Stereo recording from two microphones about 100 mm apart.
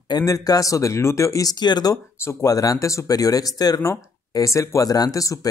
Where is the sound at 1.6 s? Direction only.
45° left (ahead or behind).